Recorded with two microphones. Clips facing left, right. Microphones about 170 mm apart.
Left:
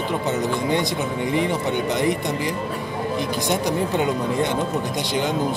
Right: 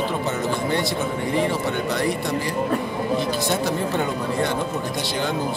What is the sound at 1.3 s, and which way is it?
Speech, 20° left (ahead or behind).